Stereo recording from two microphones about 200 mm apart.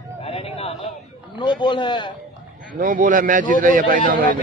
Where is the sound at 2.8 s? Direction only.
45° right (ahead or behind).